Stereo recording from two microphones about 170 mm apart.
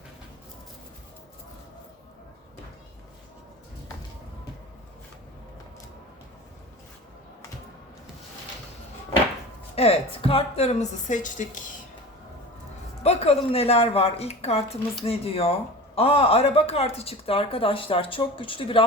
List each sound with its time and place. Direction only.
9.7 s speech: 35° left (ahead or behind)
13.0 s speech: 40° left (ahead or behind)